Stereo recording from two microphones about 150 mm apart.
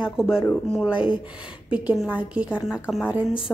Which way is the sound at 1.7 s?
10° right (ahead or behind).